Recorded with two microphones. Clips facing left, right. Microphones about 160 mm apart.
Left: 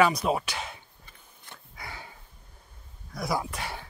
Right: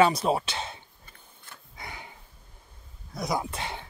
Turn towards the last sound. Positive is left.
turn(degrees=-25)  # may be behind; listen again after turning